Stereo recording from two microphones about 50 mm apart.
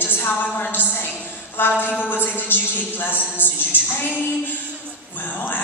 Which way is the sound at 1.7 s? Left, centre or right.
Left.